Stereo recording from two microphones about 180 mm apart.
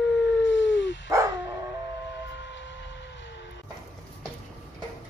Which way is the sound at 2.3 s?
85° left.